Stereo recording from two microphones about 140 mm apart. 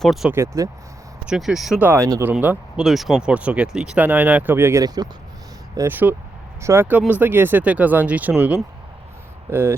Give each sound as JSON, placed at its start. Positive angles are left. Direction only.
{"t": 0.0, "sound": "speech", "side_deg": 0}
{"t": 0.3, "sound": "speech", "side_deg": -20}
{"t": 1.2, "sound": "speech", "side_deg": -5}
{"t": 1.8, "sound": "speech", "side_deg": -15}